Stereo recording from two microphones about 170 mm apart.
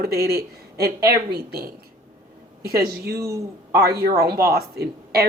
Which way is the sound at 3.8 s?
65° right (ahead or behind).